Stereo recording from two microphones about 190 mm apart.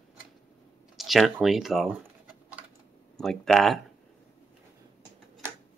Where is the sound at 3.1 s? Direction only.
5° left (ahead or behind).